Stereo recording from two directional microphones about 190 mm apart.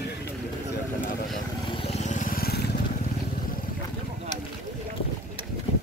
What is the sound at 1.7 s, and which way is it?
Vehicle, 30° left (ahead or behind).